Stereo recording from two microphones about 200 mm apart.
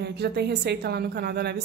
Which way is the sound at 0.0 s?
55° right (ahead or behind).